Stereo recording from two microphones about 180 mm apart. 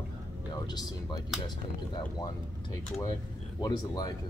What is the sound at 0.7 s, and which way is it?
Speech, 25° left (ahead or behind).